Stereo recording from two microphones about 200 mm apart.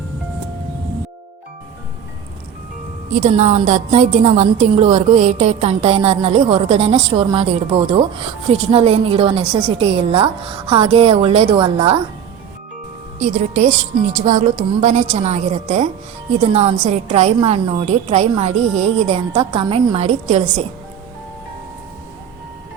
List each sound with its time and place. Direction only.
3.2 s a woman's voice: 35° right (ahead or behind)
13.1 s a woman's voice: 40° right (ahead or behind)